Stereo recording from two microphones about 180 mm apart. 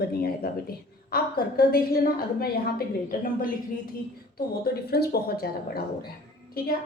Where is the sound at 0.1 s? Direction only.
55° left (ahead or behind).